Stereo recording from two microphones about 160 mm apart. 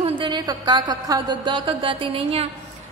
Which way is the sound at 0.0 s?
30° right (ahead or behind).